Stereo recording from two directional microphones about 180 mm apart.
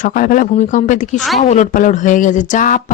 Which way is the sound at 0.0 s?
50° left (ahead or behind).